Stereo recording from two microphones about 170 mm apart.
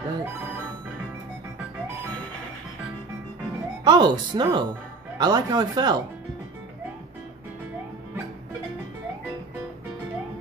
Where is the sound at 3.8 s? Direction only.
25° right (ahead or behind).